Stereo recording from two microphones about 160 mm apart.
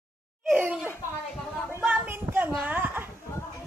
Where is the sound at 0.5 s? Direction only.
5° right (ahead or behind).